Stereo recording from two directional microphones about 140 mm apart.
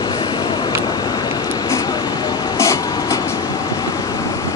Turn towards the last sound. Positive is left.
turn(degrees=20)  # may be behind; listen again after turning